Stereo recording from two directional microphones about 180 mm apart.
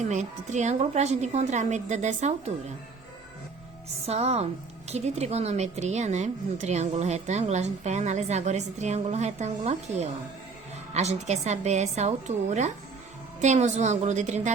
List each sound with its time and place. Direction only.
0.0 s speech: 40° right (ahead or behind)
4.0 s speech: 35° right (ahead or behind)